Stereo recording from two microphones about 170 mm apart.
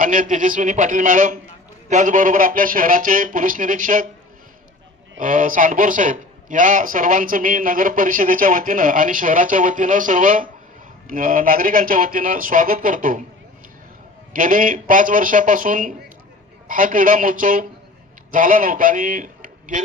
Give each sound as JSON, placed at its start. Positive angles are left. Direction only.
{"t": 0.0, "sound": "a man's voice", "side_deg": -55}
{"t": 5.2, "sound": "a man's voice", "side_deg": -55}
{"t": 14.3, "sound": "a man's voice", "side_deg": -55}